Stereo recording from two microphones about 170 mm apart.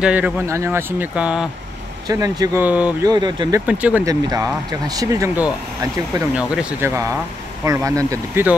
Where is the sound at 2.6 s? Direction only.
10° right (ahead or behind).